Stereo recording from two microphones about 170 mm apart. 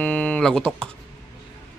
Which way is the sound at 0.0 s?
10° left (ahead or behind).